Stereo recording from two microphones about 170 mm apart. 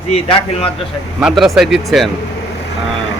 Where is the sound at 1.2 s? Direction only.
Centre (ahead or behind).